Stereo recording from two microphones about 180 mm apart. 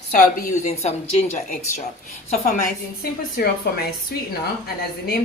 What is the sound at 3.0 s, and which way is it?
A woman's voice, 60° left (ahead or behind).